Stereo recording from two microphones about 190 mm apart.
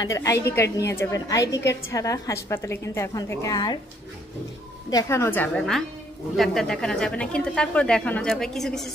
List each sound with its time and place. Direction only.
0.0 s a woman's voice: 15° left (ahead or behind)
4.9 s a woman's voice: 15° left (ahead or behind)